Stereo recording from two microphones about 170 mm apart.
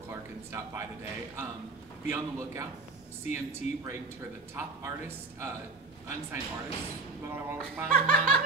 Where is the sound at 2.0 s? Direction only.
15° right (ahead or behind).